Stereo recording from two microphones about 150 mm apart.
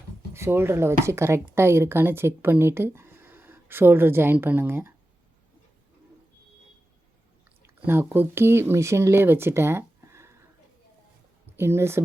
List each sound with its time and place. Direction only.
0.3 s a woman's voice: 15° right (ahead or behind)
7.9 s a woman's voice: 15° right (ahead or behind)
11.5 s a woman's voice: 15° right (ahead or behind)